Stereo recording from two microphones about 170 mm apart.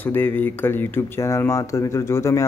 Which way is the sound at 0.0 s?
10° left (ahead or behind).